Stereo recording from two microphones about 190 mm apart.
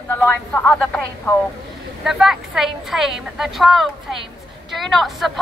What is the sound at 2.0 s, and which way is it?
A woman's voice, centre (ahead or behind).